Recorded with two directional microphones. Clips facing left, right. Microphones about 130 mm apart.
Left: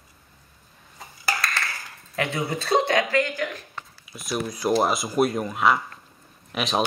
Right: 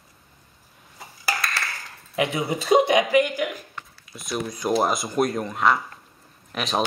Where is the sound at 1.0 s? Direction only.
Centre (ahead or behind).